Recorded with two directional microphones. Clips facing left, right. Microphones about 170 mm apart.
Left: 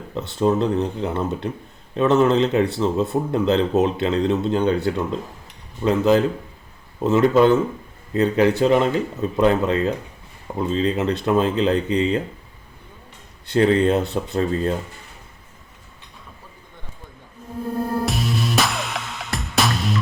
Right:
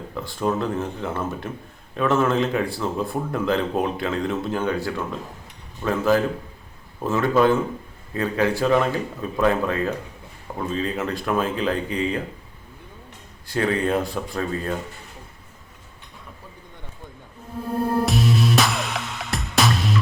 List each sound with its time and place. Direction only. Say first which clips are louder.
0.1 s speech: left 5 dB; 25° left (ahead or behind)
13.5 s speech: left 5 dB; 25° left (ahead or behind)
18.0 s music: right 3 dB; centre (ahead or behind)